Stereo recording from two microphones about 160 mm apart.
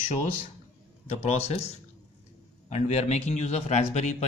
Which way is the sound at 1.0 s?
40° left (ahead or behind).